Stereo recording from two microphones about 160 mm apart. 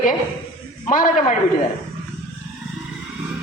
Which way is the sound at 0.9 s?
50° left (ahead or behind).